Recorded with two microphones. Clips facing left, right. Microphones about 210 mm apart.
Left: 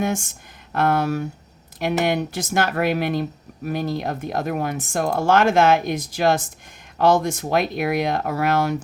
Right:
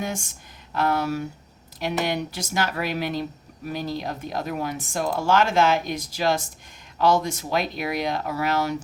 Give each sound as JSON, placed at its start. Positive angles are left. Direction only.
{"t": 0.7, "sound": "speech", "side_deg": 55}